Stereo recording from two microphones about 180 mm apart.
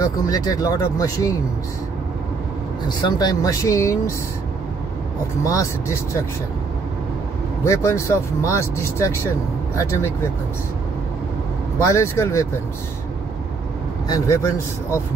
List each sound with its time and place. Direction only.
0.0 s speech: 20° left (ahead or behind)
2.9 s speech: 25° left (ahead or behind)
5.4 s speech: 15° left (ahead or behind)
7.6 s speech: 15° left (ahead or behind)
11.8 s speech: 15° left (ahead or behind)
14.0 s speech: 20° left (ahead or behind)